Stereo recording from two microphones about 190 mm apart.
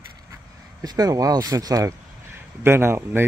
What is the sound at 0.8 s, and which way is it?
Speech, 20° right (ahead or behind).